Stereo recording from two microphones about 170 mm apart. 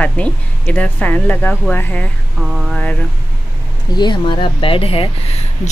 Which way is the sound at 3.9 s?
25° left (ahead or behind).